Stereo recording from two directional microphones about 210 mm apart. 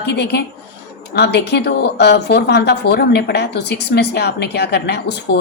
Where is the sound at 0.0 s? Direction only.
50° left (ahead or behind).